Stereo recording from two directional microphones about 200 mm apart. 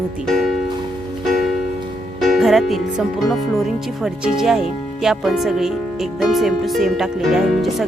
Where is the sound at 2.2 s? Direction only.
Centre (ahead or behind).